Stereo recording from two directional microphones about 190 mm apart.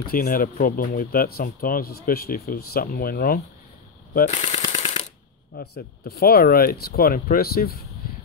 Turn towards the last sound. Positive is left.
turn(degrees=55)  # may be behind; listen again after turning